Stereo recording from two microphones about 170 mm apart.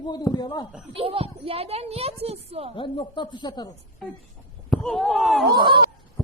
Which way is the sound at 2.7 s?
30° left (ahead or behind).